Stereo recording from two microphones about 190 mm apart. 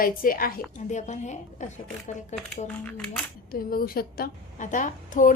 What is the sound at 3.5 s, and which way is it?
A woman's voice, 50° left (ahead or behind).